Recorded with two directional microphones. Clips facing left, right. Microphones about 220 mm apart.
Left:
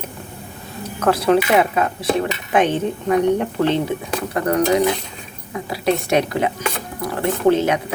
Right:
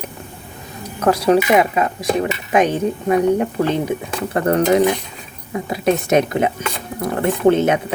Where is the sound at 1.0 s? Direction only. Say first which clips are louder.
Right 1 dB; 40° right (ahead or behind).